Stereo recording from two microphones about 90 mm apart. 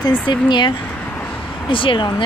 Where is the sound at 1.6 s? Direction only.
75° left (ahead or behind).